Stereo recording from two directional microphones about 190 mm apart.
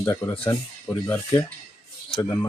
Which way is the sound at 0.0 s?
15° left (ahead or behind).